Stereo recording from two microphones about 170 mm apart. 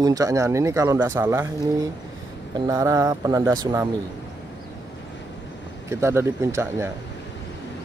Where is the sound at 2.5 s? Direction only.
20° right (ahead or behind).